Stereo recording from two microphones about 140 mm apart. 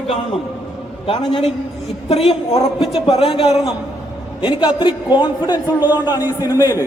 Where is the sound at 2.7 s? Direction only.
Centre (ahead or behind).